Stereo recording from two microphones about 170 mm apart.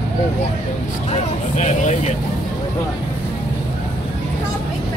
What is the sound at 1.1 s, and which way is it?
Speech, 45° left (ahead or behind).